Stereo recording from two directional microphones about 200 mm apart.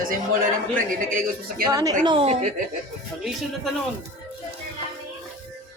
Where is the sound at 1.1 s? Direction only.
45° right (ahead or behind).